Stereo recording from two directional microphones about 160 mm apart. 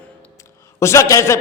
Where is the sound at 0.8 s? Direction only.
20° left (ahead or behind).